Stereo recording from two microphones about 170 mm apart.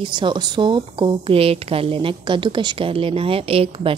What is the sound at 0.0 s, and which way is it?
A woman's voice, 25° right (ahead or behind).